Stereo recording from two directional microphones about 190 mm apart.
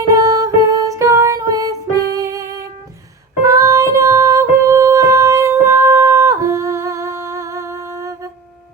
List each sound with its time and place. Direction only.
0.1 s music: 15° right (ahead or behind)